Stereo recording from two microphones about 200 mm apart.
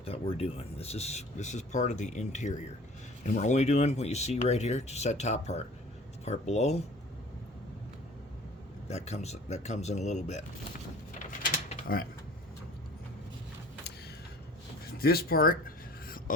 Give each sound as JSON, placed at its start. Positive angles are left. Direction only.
{"t": 0.0, "sound": "speech", "side_deg": 30}
{"t": 8.9, "sound": "speech", "side_deg": 35}
{"t": 11.3, "sound": "mechanisms", "side_deg": 40}
{"t": 14.9, "sound": "a sound", "side_deg": 50}